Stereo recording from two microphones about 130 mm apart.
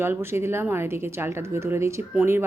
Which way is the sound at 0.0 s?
20° right (ahead or behind).